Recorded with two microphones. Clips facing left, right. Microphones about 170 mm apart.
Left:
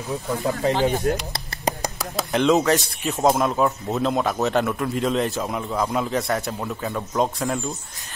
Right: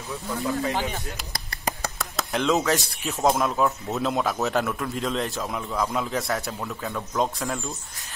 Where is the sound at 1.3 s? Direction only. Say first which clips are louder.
Left 5 dB; 20° left (ahead or behind).